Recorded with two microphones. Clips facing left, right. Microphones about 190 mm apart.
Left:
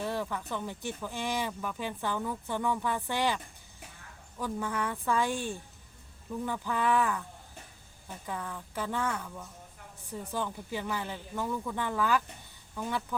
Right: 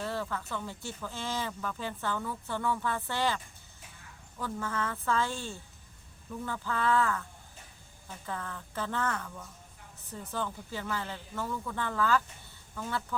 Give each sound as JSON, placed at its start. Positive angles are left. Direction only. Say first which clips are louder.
{"t": 0.0, "sound": "speech", "louder": "left 1 dB", "side_deg": 15}